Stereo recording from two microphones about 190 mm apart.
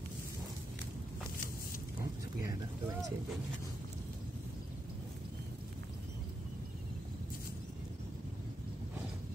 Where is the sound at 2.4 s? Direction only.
20° right (ahead or behind).